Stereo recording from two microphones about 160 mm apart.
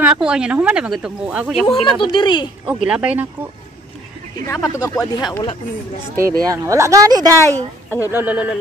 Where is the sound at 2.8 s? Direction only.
5° right (ahead or behind).